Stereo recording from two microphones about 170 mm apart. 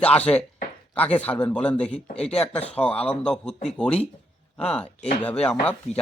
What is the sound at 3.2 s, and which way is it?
Speech, 5° left (ahead or behind).